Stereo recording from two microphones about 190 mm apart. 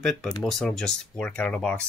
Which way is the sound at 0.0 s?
Centre (ahead or behind).